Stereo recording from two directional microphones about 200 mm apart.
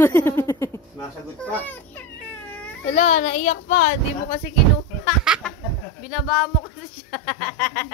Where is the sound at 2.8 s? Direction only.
35° left (ahead or behind).